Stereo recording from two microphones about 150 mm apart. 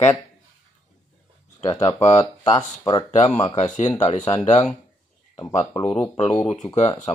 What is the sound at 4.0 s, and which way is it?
Speech, 45° left (ahead or behind).